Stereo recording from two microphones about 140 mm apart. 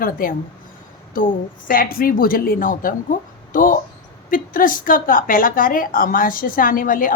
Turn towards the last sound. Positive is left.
turn(degrees=75)  # may be behind; listen again after turning